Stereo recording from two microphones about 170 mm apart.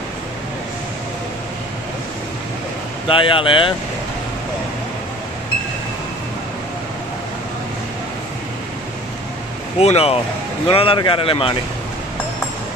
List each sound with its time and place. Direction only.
3.1 s speech: 30° left (ahead or behind)
9.8 s speech: 35° left (ahead or behind)